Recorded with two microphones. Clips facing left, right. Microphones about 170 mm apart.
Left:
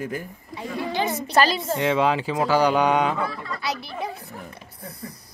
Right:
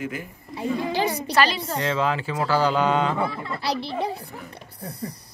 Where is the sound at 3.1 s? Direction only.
30° right (ahead or behind).